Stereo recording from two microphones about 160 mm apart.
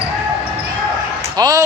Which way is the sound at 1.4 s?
20° right (ahead or behind).